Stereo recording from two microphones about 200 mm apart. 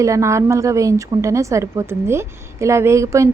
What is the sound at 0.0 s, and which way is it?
A woman's voice, 15° right (ahead or behind).